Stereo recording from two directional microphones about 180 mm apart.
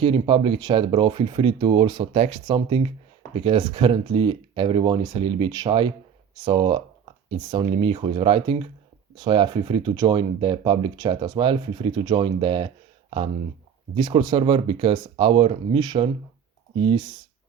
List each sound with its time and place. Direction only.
0.0 s speech: 30° right (ahead or behind)